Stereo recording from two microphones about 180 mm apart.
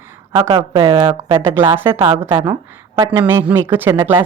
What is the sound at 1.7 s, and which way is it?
A woman's voice, 15° right (ahead or behind).